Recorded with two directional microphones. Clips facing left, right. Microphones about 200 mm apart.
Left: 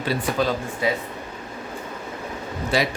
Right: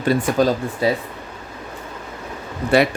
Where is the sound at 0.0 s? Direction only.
50° right (ahead or behind).